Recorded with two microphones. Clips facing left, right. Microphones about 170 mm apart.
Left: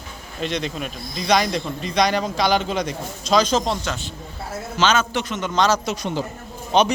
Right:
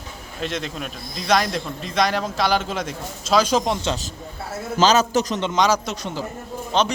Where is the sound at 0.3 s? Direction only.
Centre (ahead or behind).